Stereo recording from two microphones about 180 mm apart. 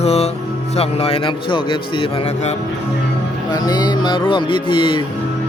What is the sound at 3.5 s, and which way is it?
Music, 20° left (ahead or behind).